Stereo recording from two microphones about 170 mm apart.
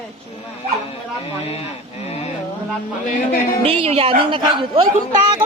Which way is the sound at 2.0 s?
40° left (ahead or behind).